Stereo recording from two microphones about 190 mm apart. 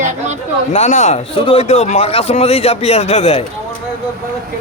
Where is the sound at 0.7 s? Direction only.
35° left (ahead or behind).